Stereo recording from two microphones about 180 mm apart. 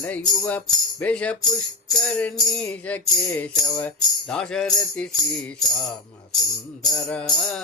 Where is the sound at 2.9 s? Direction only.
10° left (ahead or behind).